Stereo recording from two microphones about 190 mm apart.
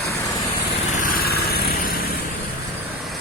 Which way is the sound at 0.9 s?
45° left (ahead or behind).